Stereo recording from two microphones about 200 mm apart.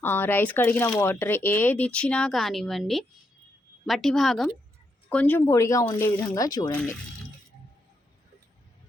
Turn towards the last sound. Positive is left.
turn(degrees=5)  # may be behind; listen again after turning